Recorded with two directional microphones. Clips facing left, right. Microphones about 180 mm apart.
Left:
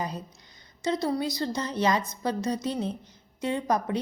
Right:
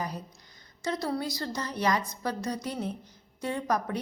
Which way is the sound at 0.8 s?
20° left (ahead or behind).